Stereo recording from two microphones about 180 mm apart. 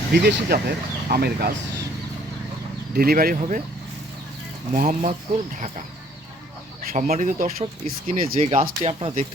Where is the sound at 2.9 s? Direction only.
55° right (ahead or behind).